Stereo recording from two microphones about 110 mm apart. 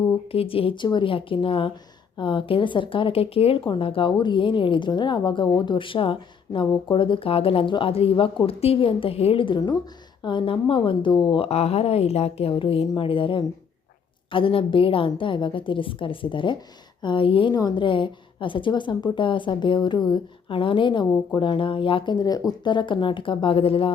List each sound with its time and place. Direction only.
0.3 s a woman's voice: 60° left (ahead or behind)
11.4 s a woman's voice: 70° left (ahead or behind); by 17.5 s 50° left (ahead or behind)
17.5 s a woman's voice: 40° left (ahead or behind); by 23.9 s 55° left (ahead or behind)